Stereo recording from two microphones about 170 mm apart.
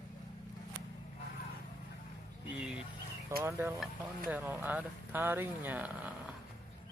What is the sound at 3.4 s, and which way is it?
Speech, 15° right (ahead or behind).